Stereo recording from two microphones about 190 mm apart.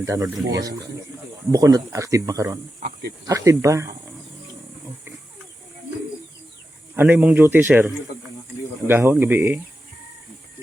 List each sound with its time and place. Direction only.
0.0 s speech: 20° right (ahead or behind)
6.9 s speech: 10° right (ahead or behind)